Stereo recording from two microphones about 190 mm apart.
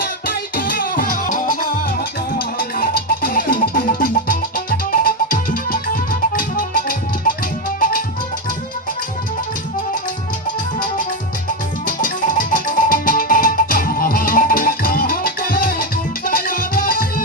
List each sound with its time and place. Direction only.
0.3 s music: 50° left (ahead or behind)
11.9 s music: 45° left (ahead or behind)